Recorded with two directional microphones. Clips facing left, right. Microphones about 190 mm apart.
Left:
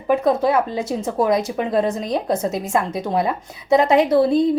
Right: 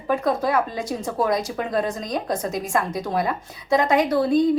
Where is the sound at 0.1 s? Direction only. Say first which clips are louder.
Left 4 dB; 25° left (ahead or behind).